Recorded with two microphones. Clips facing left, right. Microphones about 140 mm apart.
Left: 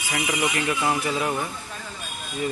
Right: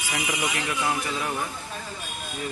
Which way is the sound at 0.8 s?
10° left (ahead or behind).